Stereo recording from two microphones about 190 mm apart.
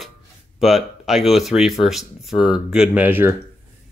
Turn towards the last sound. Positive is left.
turn(degrees=-10)  # may be behind; listen again after turning